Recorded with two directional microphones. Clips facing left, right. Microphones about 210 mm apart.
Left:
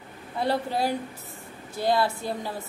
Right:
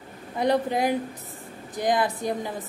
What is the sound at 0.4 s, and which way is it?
A woman's voice, 15° right (ahead or behind).